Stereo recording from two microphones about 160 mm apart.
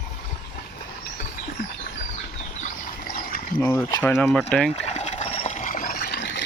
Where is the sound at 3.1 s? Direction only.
65° left (ahead or behind).